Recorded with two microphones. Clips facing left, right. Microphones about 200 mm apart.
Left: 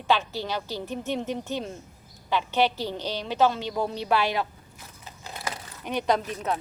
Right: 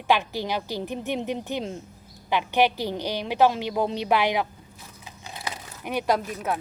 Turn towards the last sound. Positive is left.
turn(degrees=-10)  # may be behind; listen again after turning